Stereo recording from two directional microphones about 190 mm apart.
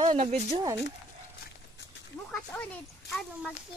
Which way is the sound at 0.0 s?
30° right (ahead or behind).